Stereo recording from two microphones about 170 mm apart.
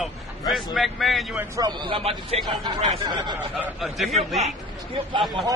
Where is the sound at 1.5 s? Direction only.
25° right (ahead or behind).